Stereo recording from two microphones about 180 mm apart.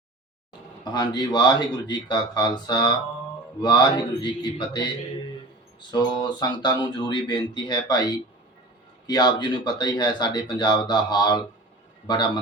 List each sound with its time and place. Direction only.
0.9 s speech: 25° left (ahead or behind)
5.9 s speech: 25° left (ahead or behind)
9.0 s speech: 25° left (ahead or behind)